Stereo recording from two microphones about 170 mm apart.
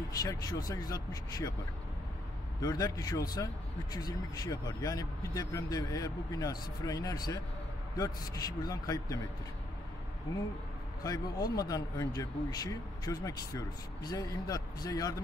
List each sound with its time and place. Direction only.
0.2 s speech: 20° left (ahead or behind)
2.6 s speech: 20° left (ahead or behind)
11.1 s speech: 20° left (ahead or behind)